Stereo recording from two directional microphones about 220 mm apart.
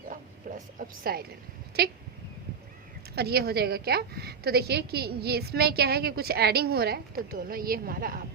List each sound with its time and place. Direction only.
0.4 s a sound: 35° right (ahead or behind)
0.8 s a woman's voice: 45° right (ahead or behind)
3.2 s a woman's voice: 45° right (ahead or behind)